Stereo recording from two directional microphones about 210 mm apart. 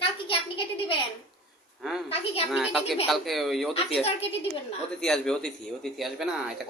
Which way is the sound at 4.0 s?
30° left (ahead or behind).